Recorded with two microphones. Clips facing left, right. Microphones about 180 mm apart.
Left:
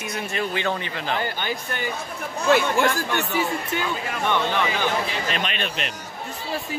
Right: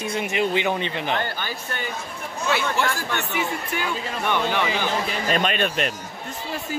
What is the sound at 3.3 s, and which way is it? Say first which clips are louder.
Speech: left 2 dB; 30° left (ahead or behind).